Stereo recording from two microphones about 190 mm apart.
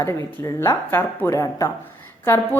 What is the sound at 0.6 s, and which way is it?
A woman's voice, 15° left (ahead or behind).